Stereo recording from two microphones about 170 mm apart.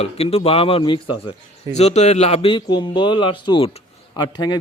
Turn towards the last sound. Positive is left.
turn(degrees=25)  # may be behind; listen again after turning